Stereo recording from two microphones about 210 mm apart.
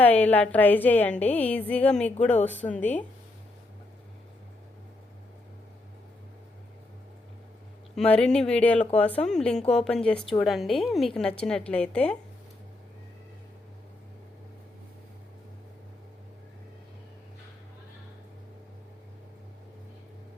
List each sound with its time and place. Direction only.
0.0 s a woman's voice: 10° left (ahead or behind)
7.9 s a woman's voice: 5° left (ahead or behind)